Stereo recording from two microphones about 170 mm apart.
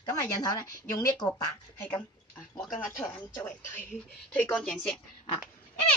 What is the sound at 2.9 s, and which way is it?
Speech, 15° left (ahead or behind).